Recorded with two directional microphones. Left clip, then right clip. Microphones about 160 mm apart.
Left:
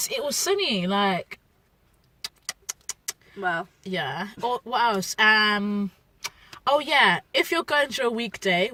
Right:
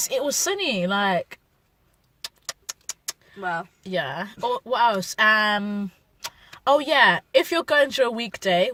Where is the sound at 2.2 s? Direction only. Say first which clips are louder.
Even; 25° right (ahead or behind).